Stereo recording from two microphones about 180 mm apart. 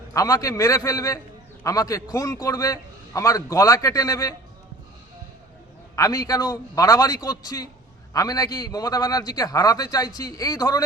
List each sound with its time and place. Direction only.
0.1 s a man's voice: 20° left (ahead or behind)
6.0 s a man's voice: 20° left (ahead or behind)